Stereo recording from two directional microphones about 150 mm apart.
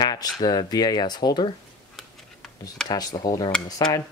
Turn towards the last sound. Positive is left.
turn(degrees=25)  # may be behind; listen again after turning